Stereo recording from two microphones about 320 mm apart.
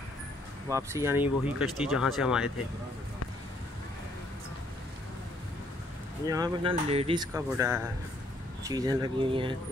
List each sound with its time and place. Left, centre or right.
0.7 s speech: centre
6.2 s speech: centre